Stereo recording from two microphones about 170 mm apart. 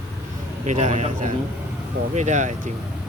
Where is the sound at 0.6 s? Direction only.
45° right (ahead or behind).